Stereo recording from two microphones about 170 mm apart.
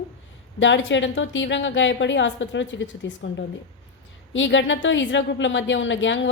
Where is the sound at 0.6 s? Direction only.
90° left.